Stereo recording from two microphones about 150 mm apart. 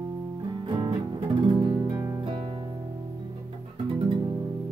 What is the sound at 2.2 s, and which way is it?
Music, 35° right (ahead or behind).